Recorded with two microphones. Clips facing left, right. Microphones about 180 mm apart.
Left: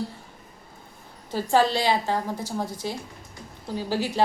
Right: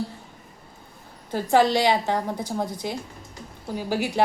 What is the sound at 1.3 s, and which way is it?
A woman's voice, 15° right (ahead or behind).